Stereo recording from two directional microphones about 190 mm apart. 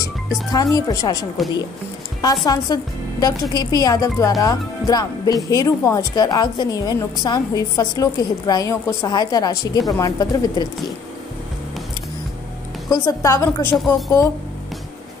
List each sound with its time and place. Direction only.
0.0 s a woman's voice: 20° left (ahead or behind)
1.4 s speech: centre (ahead or behind)
2.4 s a woman's voice: 20° left (ahead or behind)
12.9 s a woman's voice: 15° left (ahead or behind)